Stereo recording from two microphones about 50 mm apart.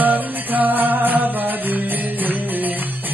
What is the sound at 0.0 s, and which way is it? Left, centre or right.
Music, right.